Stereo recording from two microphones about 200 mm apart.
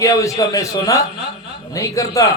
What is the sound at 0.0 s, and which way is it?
A man's voice, 15° left (ahead or behind).